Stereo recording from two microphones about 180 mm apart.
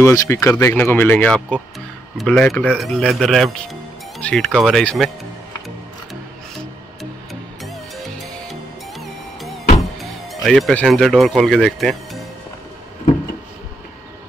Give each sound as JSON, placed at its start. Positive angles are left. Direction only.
{"t": 0.0, "sound": "speech", "side_deg": 15}
{"t": 7.6, "sound": "music", "side_deg": 0}
{"t": 9.8, "sound": "speech", "side_deg": 0}